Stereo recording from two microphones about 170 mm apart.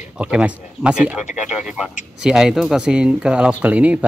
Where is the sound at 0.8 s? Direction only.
5° right (ahead or behind).